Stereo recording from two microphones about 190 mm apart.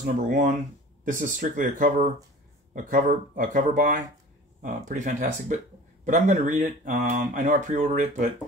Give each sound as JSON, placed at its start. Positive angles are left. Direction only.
{"t": 0.0, "sound": "speech", "side_deg": -45}